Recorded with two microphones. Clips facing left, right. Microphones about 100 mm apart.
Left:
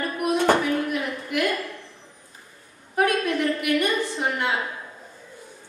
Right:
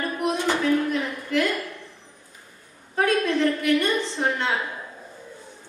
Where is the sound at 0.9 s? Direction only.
15° left (ahead or behind).